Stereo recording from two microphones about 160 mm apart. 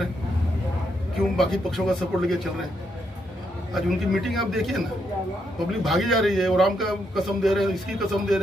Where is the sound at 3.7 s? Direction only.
Centre (ahead or behind).